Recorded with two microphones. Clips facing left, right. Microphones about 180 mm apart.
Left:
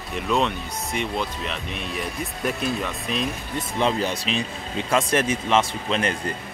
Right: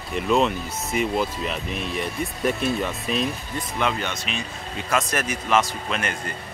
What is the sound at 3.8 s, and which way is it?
Speech, 35° left (ahead or behind).